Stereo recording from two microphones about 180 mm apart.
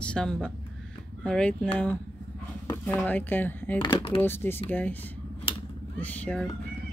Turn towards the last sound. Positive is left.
turn(degrees=5)  # may be behind; listen again after turning